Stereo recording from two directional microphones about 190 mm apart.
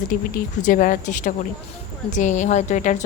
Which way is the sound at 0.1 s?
45° left (ahead or behind).